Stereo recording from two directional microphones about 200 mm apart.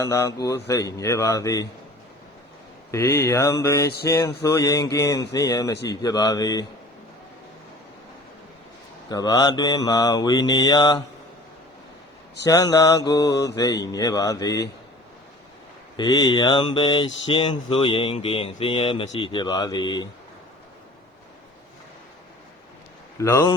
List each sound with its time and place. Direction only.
0.0 s mantra: 15° left (ahead or behind)
2.9 s mantra: 15° left (ahead or behind)
3.8 s a sound: 55° left (ahead or behind)
4.1 s mantra: 15° left (ahead or behind)
5.9 s speech: 20° left (ahead or behind)
9.0 s speech: 20° left (ahead or behind)
12.5 s mantra: 15° left (ahead or behind)
16.0 s speech: 20° left (ahead or behind)
23.1 s a man's voice: 15° left (ahead or behind)